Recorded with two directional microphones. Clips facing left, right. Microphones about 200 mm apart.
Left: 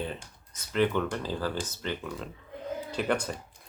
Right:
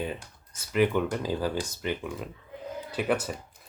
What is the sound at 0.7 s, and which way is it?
Speech, 10° right (ahead or behind).